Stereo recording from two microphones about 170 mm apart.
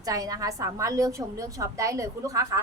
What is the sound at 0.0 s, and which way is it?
A woman's voice, 20° right (ahead or behind).